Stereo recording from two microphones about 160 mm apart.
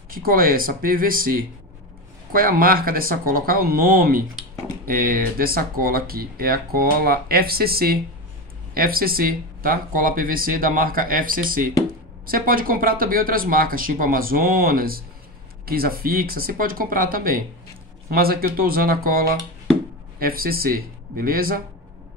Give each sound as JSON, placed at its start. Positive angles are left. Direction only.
{"t": 0.1, "sound": "speech", "side_deg": -65}